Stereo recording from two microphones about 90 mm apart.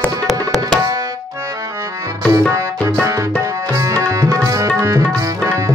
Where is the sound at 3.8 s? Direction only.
40° right (ahead or behind).